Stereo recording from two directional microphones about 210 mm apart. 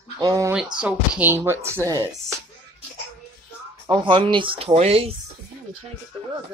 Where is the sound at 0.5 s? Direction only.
5° right (ahead or behind).